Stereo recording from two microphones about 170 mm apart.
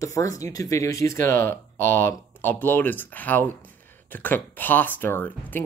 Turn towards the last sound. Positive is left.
turn(degrees=10)  # may be behind; listen again after turning